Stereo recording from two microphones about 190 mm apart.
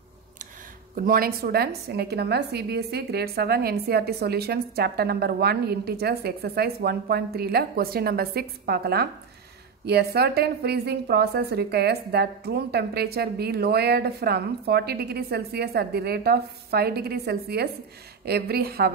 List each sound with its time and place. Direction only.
0.9 s a woman's voice: 50° right (ahead or behind)